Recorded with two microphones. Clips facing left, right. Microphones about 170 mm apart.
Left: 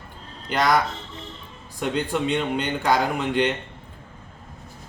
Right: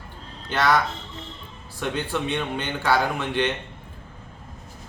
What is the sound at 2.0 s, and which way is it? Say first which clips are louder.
A man's voice: left 3 dB; 15° left (ahead or behind).